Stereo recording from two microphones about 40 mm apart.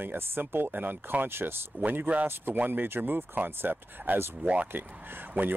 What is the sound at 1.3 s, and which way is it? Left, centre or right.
Speech, right.